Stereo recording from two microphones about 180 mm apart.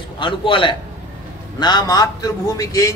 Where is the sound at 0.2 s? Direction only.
25° left (ahead or behind).